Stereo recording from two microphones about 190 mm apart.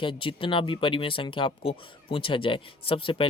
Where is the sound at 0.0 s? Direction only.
25° left (ahead or behind).